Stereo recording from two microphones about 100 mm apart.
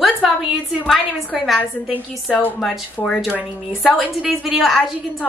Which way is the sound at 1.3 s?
Centre (ahead or behind).